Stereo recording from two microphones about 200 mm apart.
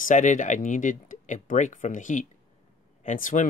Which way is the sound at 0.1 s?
40° left (ahead or behind).